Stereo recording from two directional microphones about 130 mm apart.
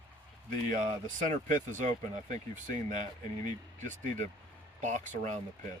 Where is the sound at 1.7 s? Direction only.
75° right (ahead or behind).